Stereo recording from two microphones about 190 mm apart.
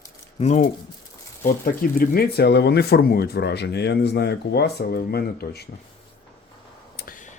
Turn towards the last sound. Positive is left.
turn(degrees=45)  # may be behind; listen again after turning